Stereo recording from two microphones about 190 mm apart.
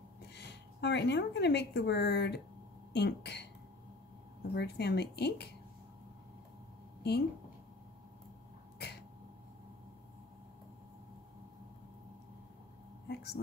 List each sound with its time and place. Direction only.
0.3 s a woman's voice: 60° left (ahead or behind)
4.6 s speech: 60° left (ahead or behind)
7.0 s a woman's voice: 60° left (ahead or behind)
13.1 s a sound: 60° left (ahead or behind)